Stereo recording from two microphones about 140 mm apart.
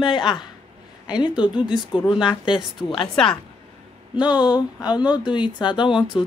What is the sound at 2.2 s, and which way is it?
Speech, 35° left (ahead or behind).